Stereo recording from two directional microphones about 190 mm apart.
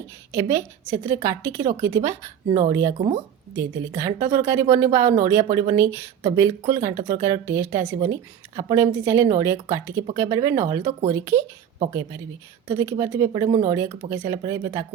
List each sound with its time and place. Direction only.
0.3 s a woman's voice: 15° right (ahead or behind)
12.6 s a woman's voice: 15° right (ahead or behind)